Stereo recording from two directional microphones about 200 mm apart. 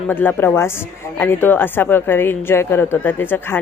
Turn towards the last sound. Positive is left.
turn(degrees=10)  # may be behind; listen again after turning